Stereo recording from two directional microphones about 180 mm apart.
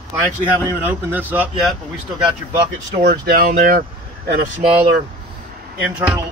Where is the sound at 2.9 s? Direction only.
60° right (ahead or behind).